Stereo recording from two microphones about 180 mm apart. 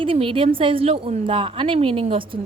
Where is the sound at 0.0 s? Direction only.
30° right (ahead or behind).